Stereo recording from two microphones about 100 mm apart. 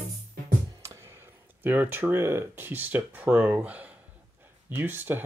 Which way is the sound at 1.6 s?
20° right (ahead or behind).